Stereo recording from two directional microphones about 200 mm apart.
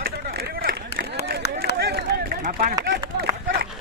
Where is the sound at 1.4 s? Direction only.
55° left (ahead or behind).